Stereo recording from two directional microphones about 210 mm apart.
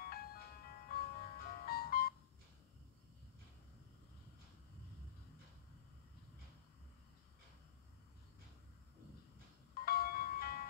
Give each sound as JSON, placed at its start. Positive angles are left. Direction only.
{"t": 0.0, "sound": "music", "side_deg": 45}
{"t": 9.8, "sound": "music", "side_deg": 45}